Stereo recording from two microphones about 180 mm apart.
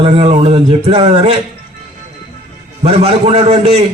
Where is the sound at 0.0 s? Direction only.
30° right (ahead or behind).